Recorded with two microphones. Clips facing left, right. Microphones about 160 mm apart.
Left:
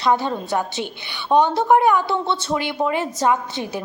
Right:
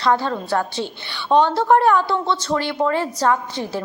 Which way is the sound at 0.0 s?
15° left (ahead or behind).